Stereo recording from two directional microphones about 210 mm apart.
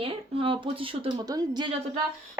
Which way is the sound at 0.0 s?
25° right (ahead or behind).